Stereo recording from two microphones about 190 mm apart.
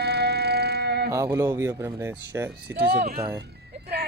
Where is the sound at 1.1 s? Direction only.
15° right (ahead or behind).